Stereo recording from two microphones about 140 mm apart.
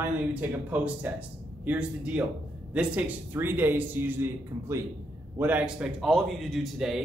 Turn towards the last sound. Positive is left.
turn(degrees=0)  # may be behind; listen again after turning